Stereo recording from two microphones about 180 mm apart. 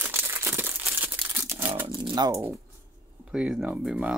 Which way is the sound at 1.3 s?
15° right (ahead or behind).